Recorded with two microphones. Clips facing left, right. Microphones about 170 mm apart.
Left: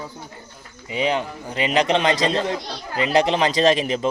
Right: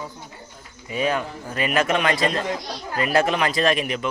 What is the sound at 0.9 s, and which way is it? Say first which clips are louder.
A man's voice: left 1 dB; 20° left (ahead or behind).